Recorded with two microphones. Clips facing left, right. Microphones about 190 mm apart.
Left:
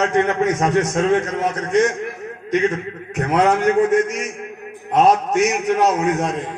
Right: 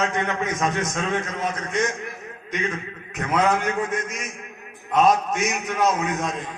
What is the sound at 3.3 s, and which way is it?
A man's voice, 70° left (ahead or behind).